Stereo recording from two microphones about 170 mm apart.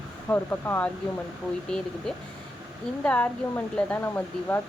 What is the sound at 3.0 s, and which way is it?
Speech, 10° left (ahead or behind).